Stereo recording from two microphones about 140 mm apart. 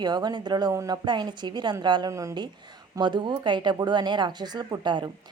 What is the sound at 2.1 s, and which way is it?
Speech, 20° right (ahead or behind).